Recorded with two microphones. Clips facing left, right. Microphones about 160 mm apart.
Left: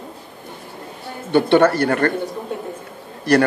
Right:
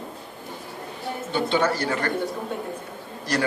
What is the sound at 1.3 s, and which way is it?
Speech, 65° left (ahead or behind).